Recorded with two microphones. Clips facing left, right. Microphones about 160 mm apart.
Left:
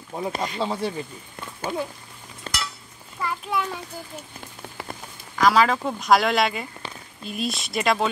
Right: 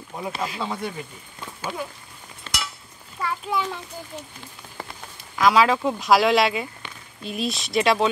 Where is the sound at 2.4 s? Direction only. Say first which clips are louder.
Left 1 dB; 40° left (ahead or behind).